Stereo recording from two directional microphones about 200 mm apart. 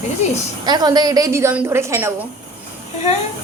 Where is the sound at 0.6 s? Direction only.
20° right (ahead or behind).